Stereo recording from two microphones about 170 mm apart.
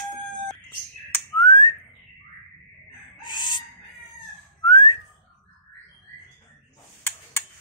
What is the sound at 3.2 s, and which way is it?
Chicken, 25° left (ahead or behind).